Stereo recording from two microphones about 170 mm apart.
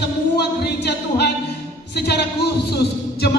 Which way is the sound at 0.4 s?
75° left (ahead or behind).